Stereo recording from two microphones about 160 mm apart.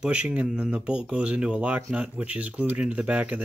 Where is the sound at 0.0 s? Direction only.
5° right (ahead or behind).